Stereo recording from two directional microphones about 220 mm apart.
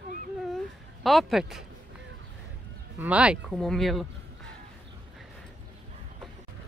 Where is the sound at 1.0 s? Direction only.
Centre (ahead or behind).